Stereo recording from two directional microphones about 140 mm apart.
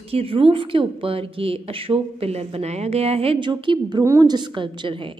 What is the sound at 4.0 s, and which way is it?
A woman's voice, 25° right (ahead or behind).